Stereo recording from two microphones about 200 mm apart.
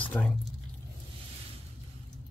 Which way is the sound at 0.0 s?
10° left (ahead or behind).